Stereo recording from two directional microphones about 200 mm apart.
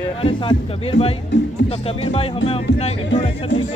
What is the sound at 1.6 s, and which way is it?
Speech, 30° left (ahead or behind).